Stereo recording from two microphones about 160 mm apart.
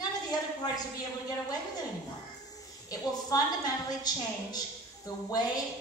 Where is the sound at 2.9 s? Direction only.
20° left (ahead or behind).